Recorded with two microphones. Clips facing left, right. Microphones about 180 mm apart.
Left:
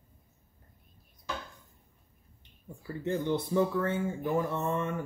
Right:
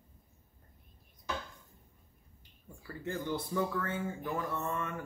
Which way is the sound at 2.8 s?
25° left (ahead or behind).